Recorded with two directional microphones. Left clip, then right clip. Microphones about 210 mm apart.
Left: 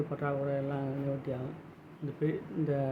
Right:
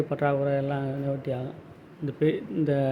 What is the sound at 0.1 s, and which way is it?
Speech, 20° right (ahead or behind).